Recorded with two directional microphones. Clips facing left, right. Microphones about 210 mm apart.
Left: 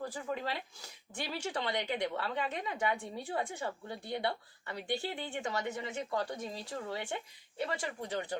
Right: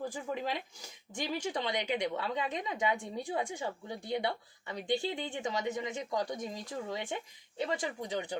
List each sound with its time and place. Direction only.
0.1 s speech: 15° right (ahead or behind)